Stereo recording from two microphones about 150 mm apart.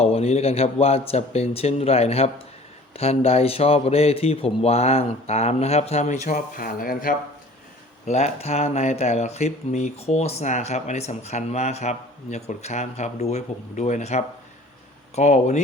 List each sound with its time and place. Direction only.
0.0 s speech: 45° left (ahead or behind)
6.2 s speech: 65° left (ahead or behind)
8.0 s speech: 50° left (ahead or behind)